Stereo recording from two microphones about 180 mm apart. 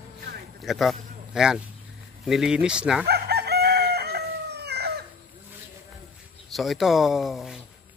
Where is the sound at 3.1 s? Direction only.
65° right (ahead or behind).